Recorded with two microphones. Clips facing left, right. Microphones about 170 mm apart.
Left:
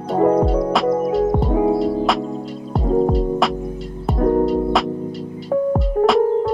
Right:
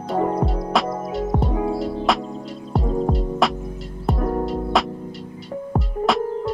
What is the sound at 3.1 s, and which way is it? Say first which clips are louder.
Music: left 3 dB; centre (ahead or behind).